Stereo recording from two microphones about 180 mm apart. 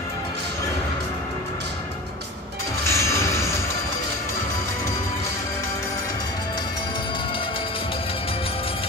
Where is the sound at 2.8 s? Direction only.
15° left (ahead or behind).